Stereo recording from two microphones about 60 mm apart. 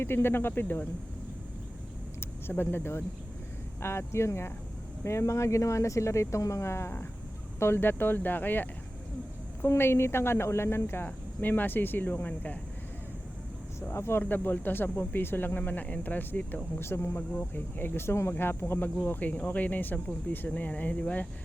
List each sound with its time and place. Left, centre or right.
0.0 s speech: left
2.5 s speech: left
13.9 s speech: left
16.7 s speech: left; by 21.2 s centre